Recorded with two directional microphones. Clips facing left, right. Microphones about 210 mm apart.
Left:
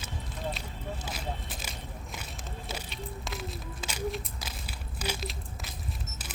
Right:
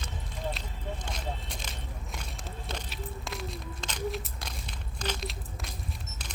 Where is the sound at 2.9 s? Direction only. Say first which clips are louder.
Even; centre (ahead or behind).